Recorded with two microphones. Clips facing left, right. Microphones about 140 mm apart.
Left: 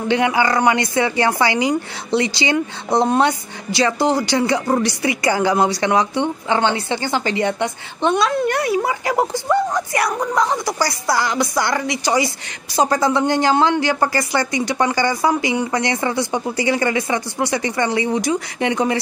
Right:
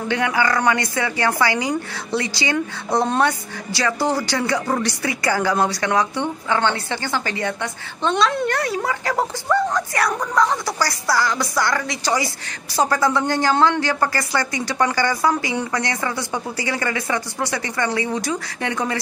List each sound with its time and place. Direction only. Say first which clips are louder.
0.1 s a woman's voice: left 4 dB; 20° left (ahead or behind)